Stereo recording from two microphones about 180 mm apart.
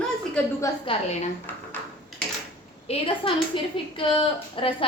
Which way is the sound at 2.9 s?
30° left (ahead or behind).